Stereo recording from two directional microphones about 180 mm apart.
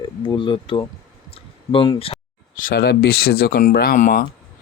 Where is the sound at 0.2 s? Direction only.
25° left (ahead or behind).